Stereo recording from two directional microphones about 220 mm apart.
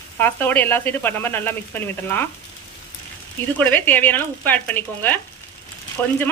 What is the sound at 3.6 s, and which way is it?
Speech, 10° left (ahead or behind).